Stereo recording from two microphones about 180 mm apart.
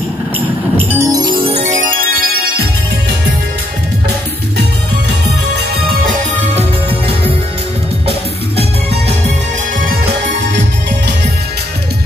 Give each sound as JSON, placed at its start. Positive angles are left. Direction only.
{"t": 0.7, "sound": "music", "side_deg": -15}
{"t": 2.0, "sound": "music", "side_deg": -55}
{"t": 6.0, "sound": "music", "side_deg": -35}